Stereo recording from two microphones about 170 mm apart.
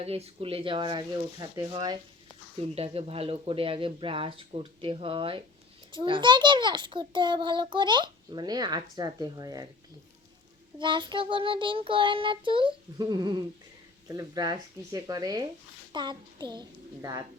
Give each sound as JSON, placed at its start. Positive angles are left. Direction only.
{"t": 0.0, "sound": "a child's voice", "side_deg": -35}
{"t": 2.7, "sound": "a child's voice", "side_deg": -35}
{"t": 10.8, "sound": "a child's voice", "side_deg": -30}